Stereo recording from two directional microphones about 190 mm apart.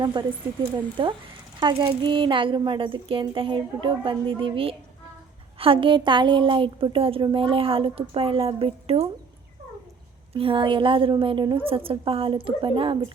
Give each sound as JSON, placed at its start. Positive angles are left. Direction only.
{"t": 0.0, "sound": "a woman's voice", "side_deg": -25}
{"t": 10.3, "sound": "a woman's voice", "side_deg": -30}